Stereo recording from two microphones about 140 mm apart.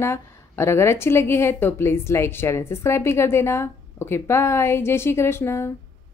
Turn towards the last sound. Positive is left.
turn(degrees=20)  # may be behind; listen again after turning